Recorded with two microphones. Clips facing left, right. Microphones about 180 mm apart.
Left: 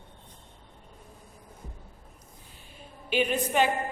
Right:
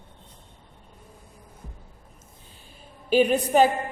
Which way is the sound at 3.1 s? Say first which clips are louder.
Right 7 dB; 40° right (ahead or behind).